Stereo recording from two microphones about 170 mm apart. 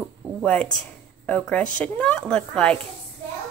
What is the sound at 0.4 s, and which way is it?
A woman's voice, 5° left (ahead or behind).